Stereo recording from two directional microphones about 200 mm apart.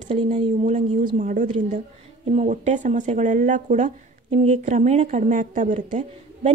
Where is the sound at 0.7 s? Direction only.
40° right (ahead or behind).